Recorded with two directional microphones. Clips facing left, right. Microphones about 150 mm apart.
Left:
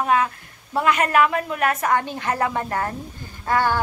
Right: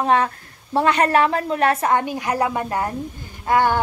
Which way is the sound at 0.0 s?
30° right (ahead or behind).